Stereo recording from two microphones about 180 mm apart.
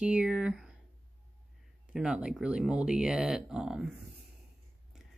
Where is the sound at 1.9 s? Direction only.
5° right (ahead or behind).